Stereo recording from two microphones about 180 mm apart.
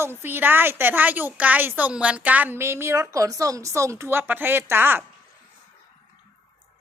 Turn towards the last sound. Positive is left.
turn(degrees=-10)  # may be behind; listen again after turning